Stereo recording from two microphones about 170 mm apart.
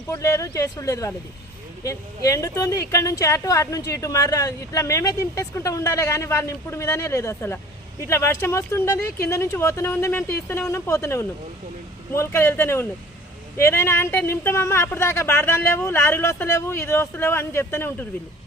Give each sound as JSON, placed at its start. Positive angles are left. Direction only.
{"t": 0.1, "sound": "speech", "side_deg": 20}